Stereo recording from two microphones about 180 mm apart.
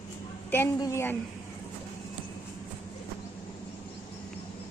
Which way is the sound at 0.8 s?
15° left (ahead or behind).